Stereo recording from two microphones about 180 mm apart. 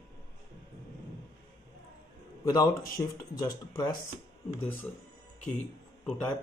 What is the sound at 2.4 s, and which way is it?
Speech, 20° left (ahead or behind).